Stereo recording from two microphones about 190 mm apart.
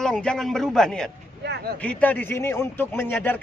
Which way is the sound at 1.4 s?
60° right (ahead or behind).